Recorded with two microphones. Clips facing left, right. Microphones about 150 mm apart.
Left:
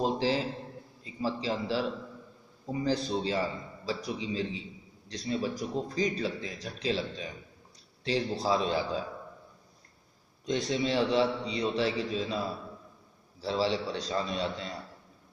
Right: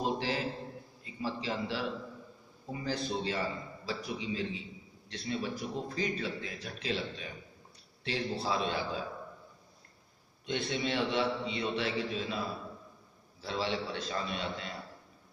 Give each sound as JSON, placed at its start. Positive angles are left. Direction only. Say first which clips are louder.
{"t": 0.0, "sound": "a sound", "louder": "left 5 dB", "side_deg": 30}
{"t": 1.2, "sound": "speech", "louder": "left 4 dB", "side_deg": 35}
{"t": 10.4, "sound": "speech", "louder": "left 4 dB", "side_deg": 35}
{"t": 13.4, "sound": "speech", "louder": "left 5 dB", "side_deg": 35}